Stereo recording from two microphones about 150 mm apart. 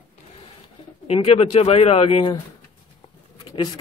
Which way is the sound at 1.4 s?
40° left (ahead or behind).